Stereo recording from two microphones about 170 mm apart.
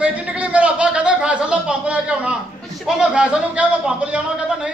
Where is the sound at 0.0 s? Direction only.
5° right (ahead or behind).